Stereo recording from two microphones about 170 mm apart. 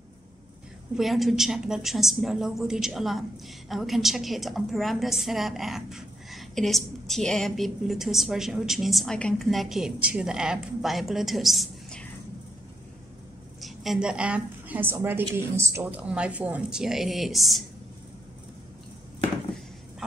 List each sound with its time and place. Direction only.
0.9 s a woman's voice: centre (ahead or behind)
13.6 s a woman's voice: centre (ahead or behind)